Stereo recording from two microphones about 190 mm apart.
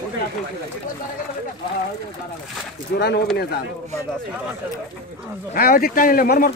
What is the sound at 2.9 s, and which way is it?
Speech, 60° left (ahead or behind).